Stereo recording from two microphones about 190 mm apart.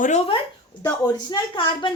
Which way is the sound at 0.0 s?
35° left (ahead or behind).